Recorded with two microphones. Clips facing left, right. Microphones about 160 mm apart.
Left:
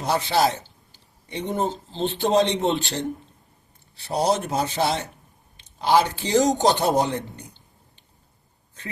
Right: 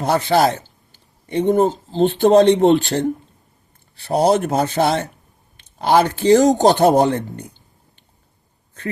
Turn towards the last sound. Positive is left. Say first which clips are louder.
# right 7 dB
turn(degrees=-55)  # may be behind; listen again after turning